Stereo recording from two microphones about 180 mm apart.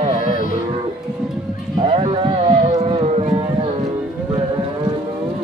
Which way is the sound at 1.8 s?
30° right (ahead or behind).